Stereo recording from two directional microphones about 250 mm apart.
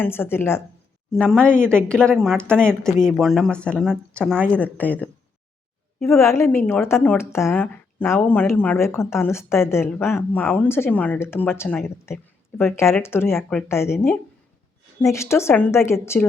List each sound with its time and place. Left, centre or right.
0.0 s a woman's voice: centre